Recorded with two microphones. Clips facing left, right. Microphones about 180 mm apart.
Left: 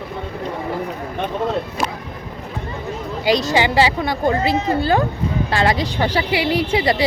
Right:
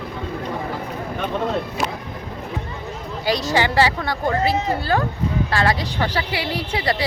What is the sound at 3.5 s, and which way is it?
A woman's voice, 15° left (ahead or behind).